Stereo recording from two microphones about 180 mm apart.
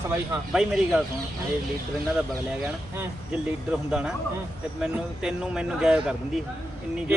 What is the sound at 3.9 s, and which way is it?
A man's voice, 5° right (ahead or behind).